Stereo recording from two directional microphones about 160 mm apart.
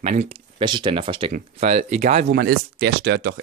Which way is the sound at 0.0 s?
45° right (ahead or behind).